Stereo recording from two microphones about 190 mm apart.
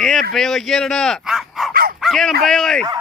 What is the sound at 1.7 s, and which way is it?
Dog, 50° right (ahead or behind).